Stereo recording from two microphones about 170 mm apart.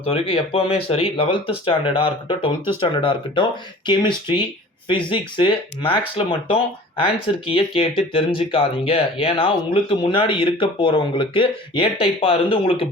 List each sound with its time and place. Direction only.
0.0 s speech: 35° left (ahead or behind)